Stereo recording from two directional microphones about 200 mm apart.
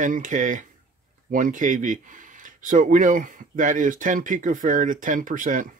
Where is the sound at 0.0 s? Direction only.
40° right (ahead or behind).